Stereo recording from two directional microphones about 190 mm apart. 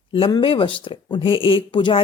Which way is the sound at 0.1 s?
25° left (ahead or behind).